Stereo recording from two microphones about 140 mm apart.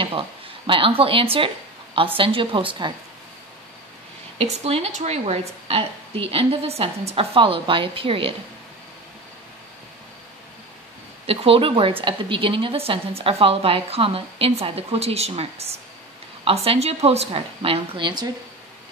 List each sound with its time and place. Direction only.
0.7 s a woman's voice: 40° right (ahead or behind)
4.4 s a woman's voice: 45° right (ahead or behind)
11.2 s a woman's voice: 40° right (ahead or behind)